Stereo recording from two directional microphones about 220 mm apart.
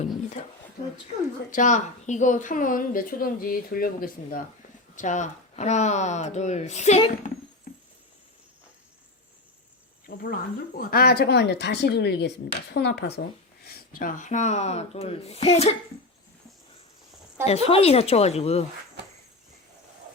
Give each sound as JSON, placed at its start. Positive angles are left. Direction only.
{"t": 1.5, "sound": "a woman's voice", "side_deg": 35}
{"t": 10.1, "sound": "speech", "side_deg": 45}
{"t": 13.7, "sound": "speech", "side_deg": 40}
{"t": 17.4, "sound": "speech", "side_deg": 30}